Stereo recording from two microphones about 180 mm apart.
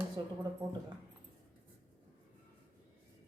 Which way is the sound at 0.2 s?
25° right (ahead or behind).